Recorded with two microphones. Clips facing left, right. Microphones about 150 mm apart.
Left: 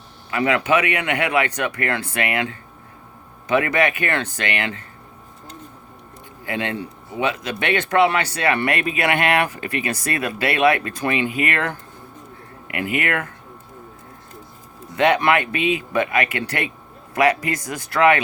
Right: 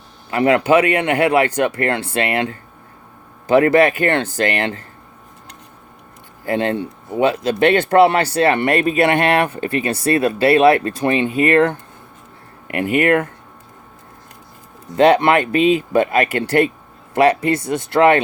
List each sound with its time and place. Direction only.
0.3 s speech: 35° right (ahead or behind)
6.4 s speech: 40° right (ahead or behind)
14.9 s speech: 35° right (ahead or behind)